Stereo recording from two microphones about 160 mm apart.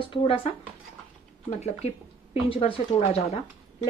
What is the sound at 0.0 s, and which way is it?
Speech, 30° left (ahead or behind).